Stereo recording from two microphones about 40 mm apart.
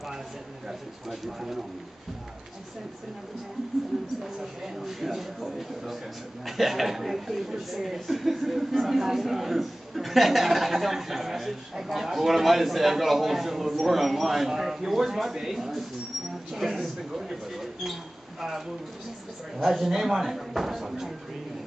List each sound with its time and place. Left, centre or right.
0.7 s speech: centre
4.2 s speech: centre
19.6 s speech: centre